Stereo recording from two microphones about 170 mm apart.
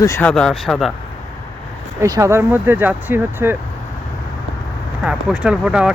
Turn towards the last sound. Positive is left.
turn(degrees=-5)  # may be behind; listen again after turning